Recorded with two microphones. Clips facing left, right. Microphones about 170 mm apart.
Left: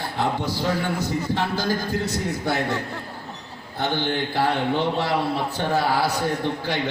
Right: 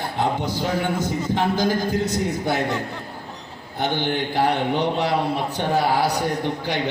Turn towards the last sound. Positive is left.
turn(degrees=-15)  # may be behind; listen again after turning